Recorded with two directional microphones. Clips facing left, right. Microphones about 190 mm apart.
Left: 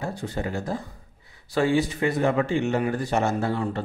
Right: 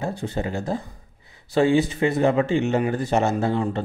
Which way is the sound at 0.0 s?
25° right (ahead or behind).